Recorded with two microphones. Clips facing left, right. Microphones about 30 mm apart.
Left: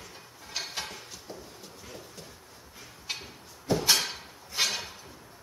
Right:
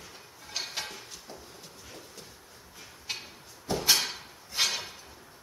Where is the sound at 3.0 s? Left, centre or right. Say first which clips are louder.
Left 1 dB; centre.